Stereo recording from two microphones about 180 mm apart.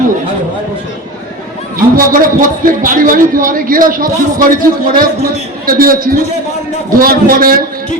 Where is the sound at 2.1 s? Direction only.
50° right (ahead or behind).